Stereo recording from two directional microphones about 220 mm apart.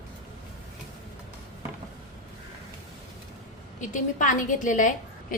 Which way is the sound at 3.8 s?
35° left (ahead or behind).